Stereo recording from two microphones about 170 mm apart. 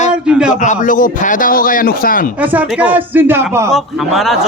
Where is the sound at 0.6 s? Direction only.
50° left (ahead or behind).